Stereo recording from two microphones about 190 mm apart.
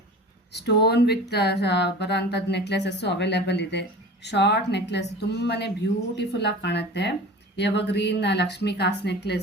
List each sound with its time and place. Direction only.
0.5 s speech: 60° left (ahead or behind)